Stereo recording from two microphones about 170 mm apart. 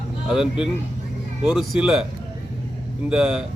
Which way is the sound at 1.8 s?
5° right (ahead or behind).